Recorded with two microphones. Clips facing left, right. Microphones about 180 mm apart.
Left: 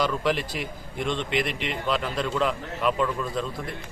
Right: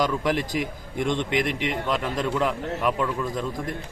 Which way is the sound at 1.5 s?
55° right (ahead or behind).